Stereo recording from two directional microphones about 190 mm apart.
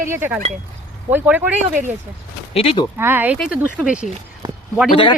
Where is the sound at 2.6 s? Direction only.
30° left (ahead or behind).